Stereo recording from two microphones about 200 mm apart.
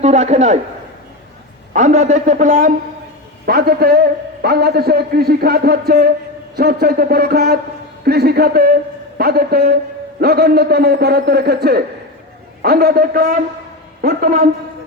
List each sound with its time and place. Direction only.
0.0 s a man's voice: 35° right (ahead or behind)
1.7 s a man's voice: 35° right (ahead or behind)